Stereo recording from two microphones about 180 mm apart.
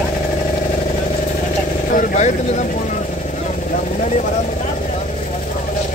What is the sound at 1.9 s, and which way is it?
Vehicle, 45° left (ahead or behind).